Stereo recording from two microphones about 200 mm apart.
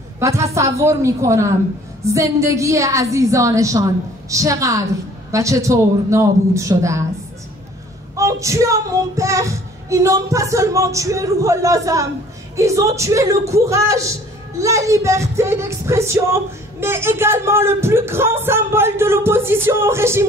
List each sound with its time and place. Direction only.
0.2 s female singing: 15° right (ahead or behind)
8.2 s female singing: 15° right (ahead or behind)